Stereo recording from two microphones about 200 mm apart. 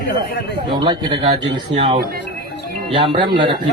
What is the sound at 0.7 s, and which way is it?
Speech, 20° right (ahead or behind).